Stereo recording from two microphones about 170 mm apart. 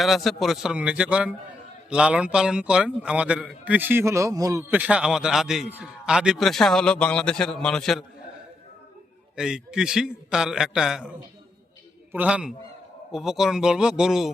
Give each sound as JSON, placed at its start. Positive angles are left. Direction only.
{"t": 0.0, "sound": "a man's voice", "side_deg": 0}
{"t": 4.7, "sound": "a man's voice", "side_deg": -5}
{"t": 9.3, "sound": "a man's voice", "side_deg": -5}
{"t": 12.1, "sound": "a man's voice", "side_deg": -5}